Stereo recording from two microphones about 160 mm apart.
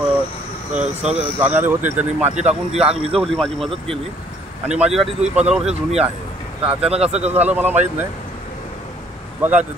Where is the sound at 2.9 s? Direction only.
35° right (ahead or behind).